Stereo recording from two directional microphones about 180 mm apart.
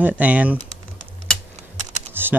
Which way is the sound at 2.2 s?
10° right (ahead or behind).